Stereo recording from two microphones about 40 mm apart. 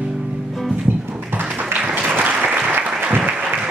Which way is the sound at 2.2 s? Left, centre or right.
Right.